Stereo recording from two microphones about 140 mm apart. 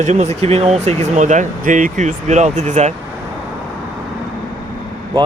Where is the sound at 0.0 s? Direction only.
55° right (ahead or behind).